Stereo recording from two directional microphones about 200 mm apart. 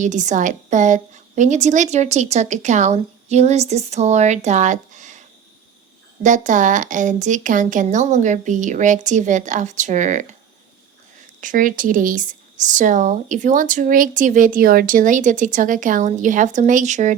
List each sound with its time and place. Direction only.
0.0 s speech: 40° right (ahead or behind)
6.2 s speech: 40° right (ahead or behind)
11.3 s speech: 40° right (ahead or behind)